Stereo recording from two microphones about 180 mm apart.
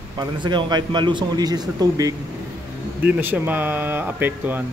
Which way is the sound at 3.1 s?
10° right (ahead or behind).